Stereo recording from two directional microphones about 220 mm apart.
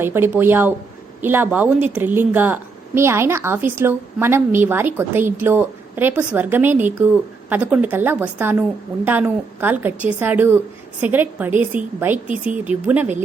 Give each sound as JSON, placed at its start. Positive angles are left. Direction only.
{"t": 0.0, "sound": "a woman's voice", "side_deg": -10}